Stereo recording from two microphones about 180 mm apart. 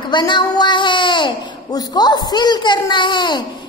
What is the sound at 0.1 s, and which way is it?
Speech, 25° left (ahead or behind).